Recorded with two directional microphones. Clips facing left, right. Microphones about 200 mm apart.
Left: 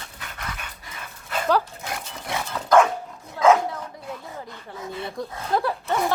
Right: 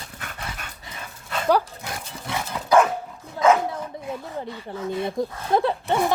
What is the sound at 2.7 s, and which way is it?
Dog, 10° right (ahead or behind).